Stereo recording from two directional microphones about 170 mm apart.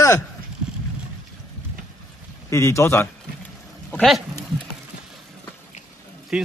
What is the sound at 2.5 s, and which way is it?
Speech, 15° left (ahead or behind).